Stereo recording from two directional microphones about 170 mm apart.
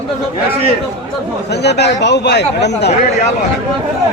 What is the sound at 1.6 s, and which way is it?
Speech, 80° left.